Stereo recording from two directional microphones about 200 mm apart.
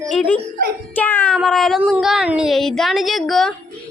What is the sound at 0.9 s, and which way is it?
Child singing, 10° left (ahead or behind).